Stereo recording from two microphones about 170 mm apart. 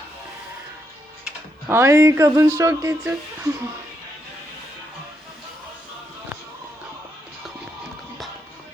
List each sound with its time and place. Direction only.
1.2 s speech: 15° right (ahead or behind)